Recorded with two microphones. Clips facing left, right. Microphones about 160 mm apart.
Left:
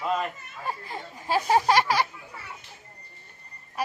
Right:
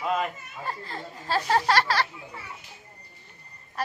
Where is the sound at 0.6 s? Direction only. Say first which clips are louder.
Left 1 dB; 15° left (ahead or behind).